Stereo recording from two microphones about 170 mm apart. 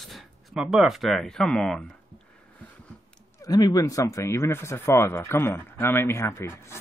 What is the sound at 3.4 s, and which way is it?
Speech, 20° left (ahead or behind).